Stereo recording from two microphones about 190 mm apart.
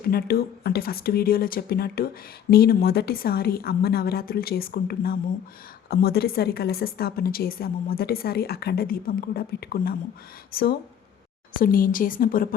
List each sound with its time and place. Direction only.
0.0 s a woman's voice: 55° left (ahead or behind)